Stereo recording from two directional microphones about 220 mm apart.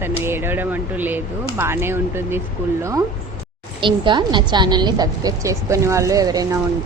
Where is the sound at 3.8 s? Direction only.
20° right (ahead or behind).